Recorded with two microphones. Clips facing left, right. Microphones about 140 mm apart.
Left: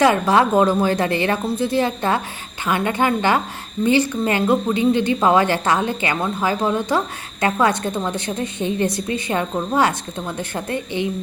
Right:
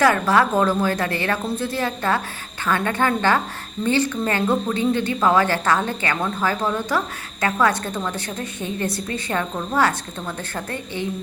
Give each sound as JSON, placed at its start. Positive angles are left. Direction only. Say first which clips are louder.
{"t": 0.0, "sound": "a woman's voice", "louder": "left 2 dB", "side_deg": 20}